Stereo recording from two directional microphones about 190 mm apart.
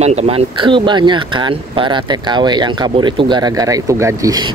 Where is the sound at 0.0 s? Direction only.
35° right (ahead or behind).